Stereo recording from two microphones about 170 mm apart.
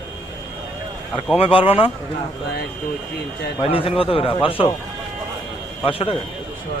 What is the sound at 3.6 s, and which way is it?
Speech, 35° left (ahead or behind).